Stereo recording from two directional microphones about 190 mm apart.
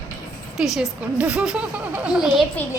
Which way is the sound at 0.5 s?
Centre (ahead or behind).